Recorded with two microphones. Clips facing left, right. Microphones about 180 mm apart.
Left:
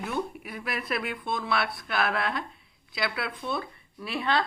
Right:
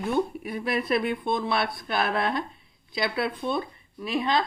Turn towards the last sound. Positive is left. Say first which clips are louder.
# right 3 dB
turn(degrees=-15)  # may be behind; listen again after turning